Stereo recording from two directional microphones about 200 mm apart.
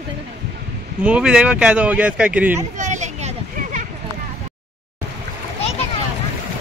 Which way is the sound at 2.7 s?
35° right (ahead or behind).